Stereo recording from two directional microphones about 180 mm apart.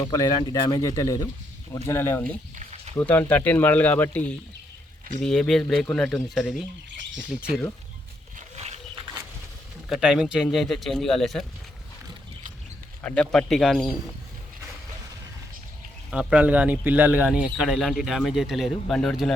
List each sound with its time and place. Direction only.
0.0 s speech: 20° left (ahead or behind); by 7.6 s 5° right (ahead or behind)
8.4 s a sound: 35° right (ahead or behind)
9.9 s speech: 5° right (ahead or behind)
13.0 s speech: 5° left (ahead or behind)
16.0 s speech: 5° right (ahead or behind)